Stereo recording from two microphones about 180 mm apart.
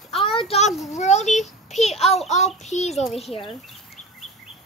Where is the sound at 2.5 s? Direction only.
40° left (ahead or behind).